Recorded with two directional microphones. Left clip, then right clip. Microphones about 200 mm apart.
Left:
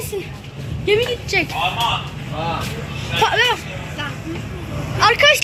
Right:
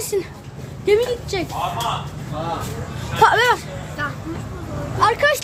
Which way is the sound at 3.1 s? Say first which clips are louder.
Right 2 dB; 25° right (ahead or behind).